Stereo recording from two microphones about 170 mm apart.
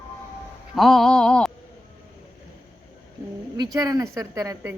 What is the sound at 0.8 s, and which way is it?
Speech, centre (ahead or behind).